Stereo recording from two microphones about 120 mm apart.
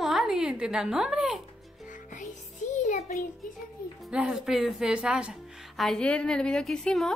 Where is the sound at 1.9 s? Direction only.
90° left.